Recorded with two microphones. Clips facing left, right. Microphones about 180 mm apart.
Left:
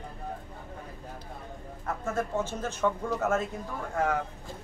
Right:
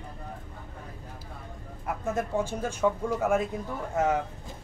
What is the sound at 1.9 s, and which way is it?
Speech, 15° right (ahead or behind).